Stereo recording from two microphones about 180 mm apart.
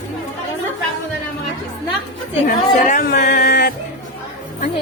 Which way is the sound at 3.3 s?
60° left (ahead or behind).